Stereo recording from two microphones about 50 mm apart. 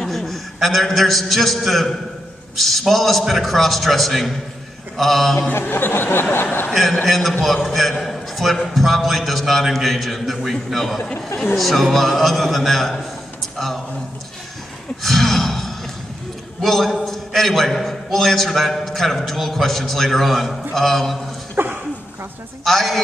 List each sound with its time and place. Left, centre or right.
0.0 s a man's voice: centre
5.5 s speech: left
6.7 s a man's voice: centre
15.0 s gasp: centre
16.6 s a man's voice: centre
21.6 s a sound: right
22.7 s a man's voice: centre